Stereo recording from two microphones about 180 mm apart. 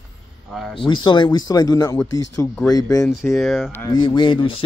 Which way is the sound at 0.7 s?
25° left (ahead or behind).